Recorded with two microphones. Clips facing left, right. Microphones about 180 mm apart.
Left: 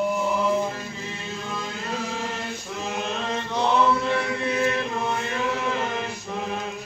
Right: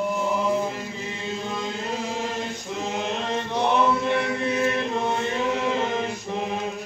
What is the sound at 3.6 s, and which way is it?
Chant, 20° right (ahead or behind).